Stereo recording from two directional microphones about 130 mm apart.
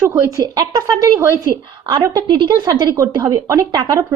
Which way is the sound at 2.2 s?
40° right (ahead or behind).